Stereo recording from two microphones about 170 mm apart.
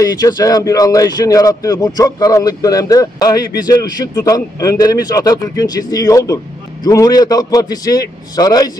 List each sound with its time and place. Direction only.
0.0 s speech: 20° left (ahead or behind)